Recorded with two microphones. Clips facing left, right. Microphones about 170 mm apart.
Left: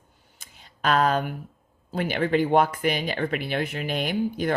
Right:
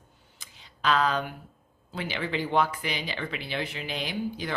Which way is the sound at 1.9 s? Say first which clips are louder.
Left 8 dB; 50° left (ahead or behind).